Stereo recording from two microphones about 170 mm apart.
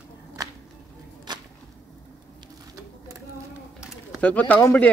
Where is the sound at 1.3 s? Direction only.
25° right (ahead or behind).